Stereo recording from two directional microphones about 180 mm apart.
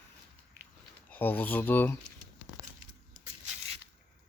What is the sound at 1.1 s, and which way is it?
Speech, 10° left (ahead or behind).